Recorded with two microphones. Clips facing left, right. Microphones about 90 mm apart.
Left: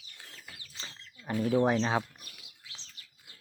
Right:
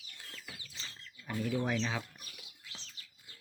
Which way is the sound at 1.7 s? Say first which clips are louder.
Left 7 dB; 45° left (ahead or behind).